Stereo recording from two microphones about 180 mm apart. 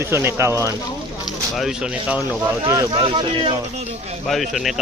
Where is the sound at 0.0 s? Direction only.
15° right (ahead or behind).